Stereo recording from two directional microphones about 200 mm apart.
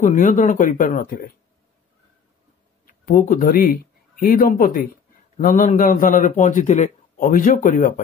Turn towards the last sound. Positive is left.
turn(degrees=40)  # may be behind; listen again after turning